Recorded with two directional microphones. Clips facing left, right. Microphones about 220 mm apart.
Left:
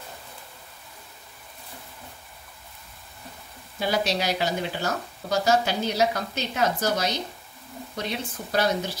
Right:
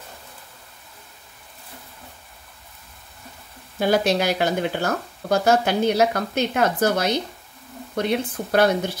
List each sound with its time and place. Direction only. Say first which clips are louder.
3.8 s speech: right 6 dB; 50° right (ahead or behind)